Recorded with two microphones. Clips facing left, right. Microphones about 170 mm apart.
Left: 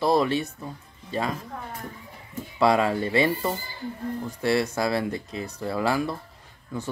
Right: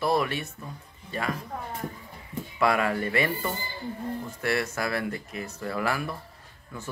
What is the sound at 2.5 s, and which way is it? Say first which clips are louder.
Speech: left 4 dB; 25° left (ahead or behind).